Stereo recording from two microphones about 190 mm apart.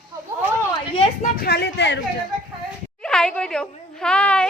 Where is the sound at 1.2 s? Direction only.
55° left (ahead or behind).